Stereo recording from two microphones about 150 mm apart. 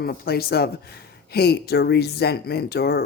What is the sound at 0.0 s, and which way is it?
Speech, 90° left.